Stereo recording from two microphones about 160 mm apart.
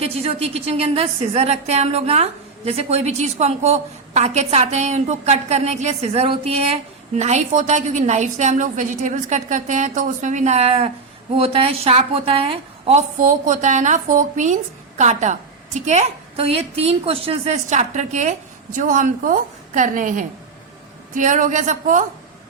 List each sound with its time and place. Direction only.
0.0 s a woman's voice: 40° right (ahead or behind)